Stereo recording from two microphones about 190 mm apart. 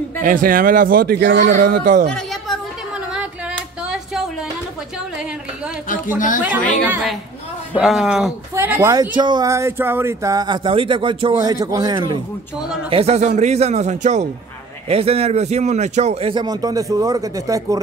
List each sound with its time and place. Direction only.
0.2 s speech: 45° right (ahead or behind)
1.4 s speech: 45° right (ahead or behind)
2.0 s a sound: centre (ahead or behind)
3.8 s a sound: 5° right (ahead or behind)
6.1 s a woman's voice: 45° left (ahead or behind)
6.9 s a man's voice: centre (ahead or behind); by 12.2 s 20° right (ahead or behind)
12.9 s a man's voice: 35° right (ahead or behind); by 17.7 s 15° right (ahead or behind)